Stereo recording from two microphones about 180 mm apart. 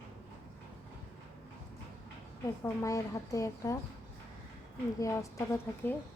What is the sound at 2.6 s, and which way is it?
A woman's voice, 15° left (ahead or behind).